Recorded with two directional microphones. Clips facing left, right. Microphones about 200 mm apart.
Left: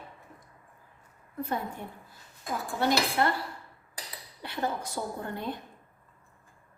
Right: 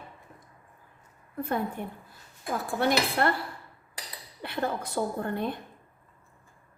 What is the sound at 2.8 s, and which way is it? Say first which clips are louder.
Speech: right 1 dB; 55° right (ahead or behind).